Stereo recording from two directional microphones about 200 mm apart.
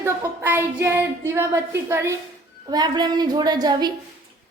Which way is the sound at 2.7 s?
20° right (ahead or behind).